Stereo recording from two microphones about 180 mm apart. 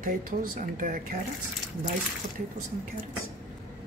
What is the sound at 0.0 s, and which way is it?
Speech, 50° right (ahead or behind).